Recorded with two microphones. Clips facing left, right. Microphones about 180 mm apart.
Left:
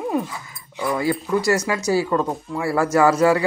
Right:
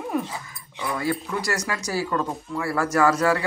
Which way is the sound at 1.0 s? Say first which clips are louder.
Left 5 dB; 25° left (ahead or behind).